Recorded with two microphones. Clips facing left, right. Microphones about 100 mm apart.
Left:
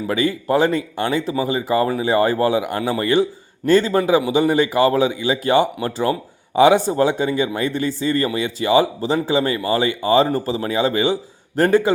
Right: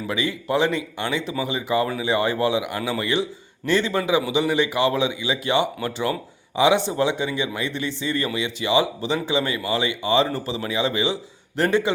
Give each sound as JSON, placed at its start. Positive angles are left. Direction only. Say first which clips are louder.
{"t": 0.1, "sound": "speech", "louder": "left 5 dB", "side_deg": 45}